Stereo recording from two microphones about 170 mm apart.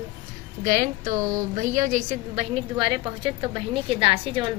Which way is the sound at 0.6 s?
50° right (ahead or behind).